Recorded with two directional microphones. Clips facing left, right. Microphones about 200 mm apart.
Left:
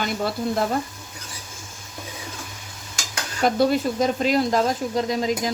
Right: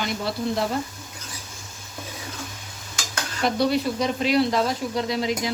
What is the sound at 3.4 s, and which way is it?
Speech, 45° left (ahead or behind).